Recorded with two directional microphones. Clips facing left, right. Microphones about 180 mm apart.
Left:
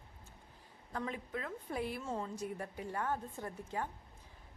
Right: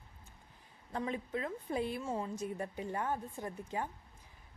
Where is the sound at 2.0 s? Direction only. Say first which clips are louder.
Right 2 dB; 10° right (ahead or behind).